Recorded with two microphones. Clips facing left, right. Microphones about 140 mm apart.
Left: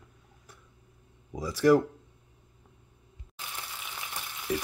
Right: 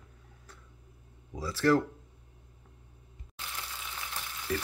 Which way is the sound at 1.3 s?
15° left (ahead or behind).